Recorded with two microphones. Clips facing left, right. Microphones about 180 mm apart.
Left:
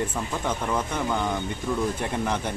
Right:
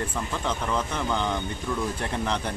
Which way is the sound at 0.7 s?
10° left (ahead or behind).